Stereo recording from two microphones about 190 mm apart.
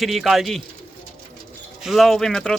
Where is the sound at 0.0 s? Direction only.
Centre (ahead or behind).